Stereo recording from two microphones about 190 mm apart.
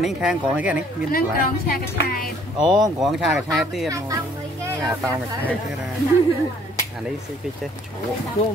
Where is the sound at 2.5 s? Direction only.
20° right (ahead or behind).